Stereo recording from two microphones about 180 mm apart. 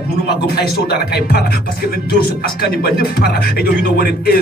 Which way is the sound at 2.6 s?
60° left (ahead or behind).